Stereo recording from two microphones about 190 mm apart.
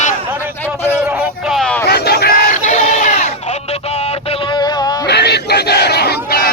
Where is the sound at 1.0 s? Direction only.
10° right (ahead or behind).